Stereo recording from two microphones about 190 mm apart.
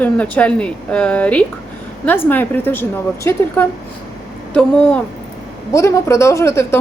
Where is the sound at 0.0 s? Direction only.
5° left (ahead or behind).